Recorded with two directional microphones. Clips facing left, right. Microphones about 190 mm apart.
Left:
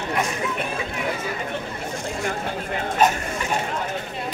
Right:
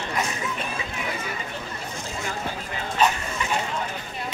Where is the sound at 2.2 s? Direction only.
50° left (ahead or behind).